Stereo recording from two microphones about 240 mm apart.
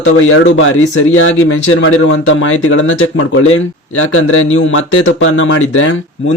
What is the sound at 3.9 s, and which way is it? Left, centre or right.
Speech, left.